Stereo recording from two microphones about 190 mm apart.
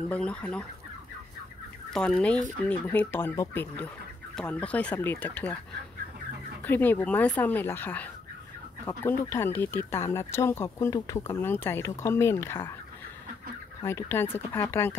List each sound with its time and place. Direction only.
0.1 s fowl: 5° left (ahead or behind)
1.9 s fowl: 5° left (ahead or behind)
2.6 s speech: 10° left (ahead or behind)
6.6 s speech: 10° left (ahead or behind)
13.8 s speech: 15° left (ahead or behind)